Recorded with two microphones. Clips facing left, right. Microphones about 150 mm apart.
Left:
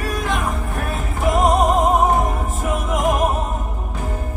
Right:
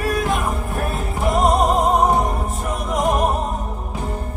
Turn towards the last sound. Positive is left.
turn(degrees=0)  # may be behind; listen again after turning